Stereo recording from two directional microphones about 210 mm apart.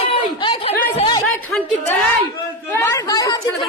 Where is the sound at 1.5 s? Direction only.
5° left (ahead or behind).